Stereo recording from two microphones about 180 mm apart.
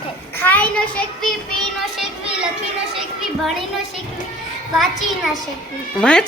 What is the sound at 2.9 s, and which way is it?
Children playing, centre (ahead or behind).